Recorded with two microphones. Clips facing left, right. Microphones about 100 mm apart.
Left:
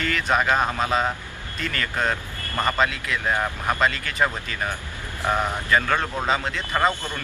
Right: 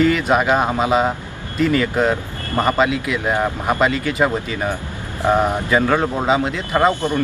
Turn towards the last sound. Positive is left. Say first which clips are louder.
# right 7 dB
turn(degrees=-20)  # may be behind; listen again after turning